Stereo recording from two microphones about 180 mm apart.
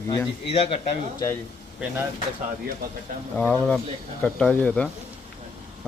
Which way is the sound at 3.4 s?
5° left (ahead or behind).